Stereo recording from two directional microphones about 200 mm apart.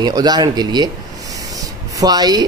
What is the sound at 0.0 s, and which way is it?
Speech, 20° right (ahead or behind).